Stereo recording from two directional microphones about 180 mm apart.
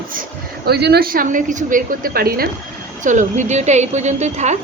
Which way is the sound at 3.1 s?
45° right (ahead or behind).